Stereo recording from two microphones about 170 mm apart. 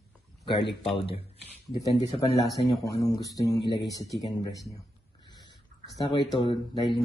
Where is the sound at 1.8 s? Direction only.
20° left (ahead or behind).